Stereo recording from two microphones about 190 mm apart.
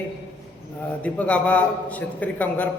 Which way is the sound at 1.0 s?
5° left (ahead or behind).